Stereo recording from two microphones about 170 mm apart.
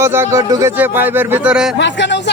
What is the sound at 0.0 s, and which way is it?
Speech, 15° right (ahead or behind).